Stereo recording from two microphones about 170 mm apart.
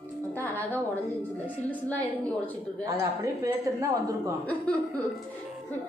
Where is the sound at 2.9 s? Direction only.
20° right (ahead or behind).